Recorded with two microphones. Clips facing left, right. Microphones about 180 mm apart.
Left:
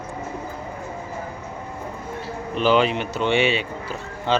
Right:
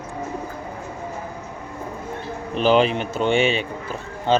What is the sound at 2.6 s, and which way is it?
Speech, 45° right (ahead or behind).